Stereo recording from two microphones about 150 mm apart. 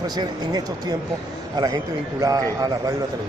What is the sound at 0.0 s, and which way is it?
Speech, 25° right (ahead or behind).